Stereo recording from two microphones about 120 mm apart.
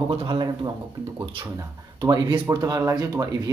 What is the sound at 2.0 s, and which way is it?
Speech, 35° right (ahead or behind).